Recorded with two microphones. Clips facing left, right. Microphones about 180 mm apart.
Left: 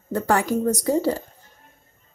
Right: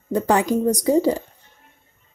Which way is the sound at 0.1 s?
20° right (ahead or behind).